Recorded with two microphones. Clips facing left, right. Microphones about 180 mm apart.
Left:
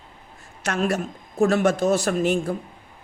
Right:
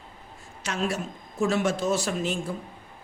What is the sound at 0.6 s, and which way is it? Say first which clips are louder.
A man's voice: left 5 dB; 60° left (ahead or behind).